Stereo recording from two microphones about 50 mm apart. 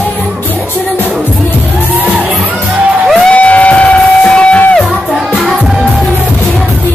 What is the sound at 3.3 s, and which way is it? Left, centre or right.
Music, left.